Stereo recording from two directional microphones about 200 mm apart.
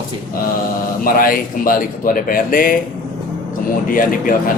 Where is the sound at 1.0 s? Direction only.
45° left (ahead or behind).